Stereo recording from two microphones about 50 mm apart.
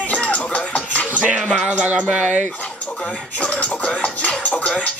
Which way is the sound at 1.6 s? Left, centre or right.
Right.